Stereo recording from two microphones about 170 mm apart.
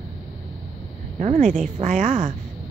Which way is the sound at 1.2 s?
45° right (ahead or behind).